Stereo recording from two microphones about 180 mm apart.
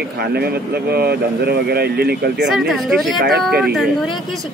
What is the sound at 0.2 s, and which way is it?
Speech, 65° right (ahead or behind).